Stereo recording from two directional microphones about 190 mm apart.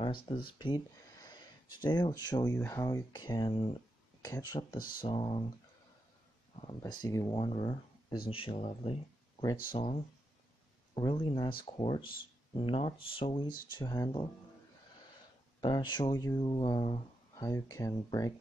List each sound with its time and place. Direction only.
0.0 s speech: 25° left (ahead or behind)
4.7 s speech: 50° left (ahead or behind)
5.0 s speech: 25° left (ahead or behind)
6.6 s speech: 20° left (ahead or behind)
15.6 s speech: 25° left (ahead or behind)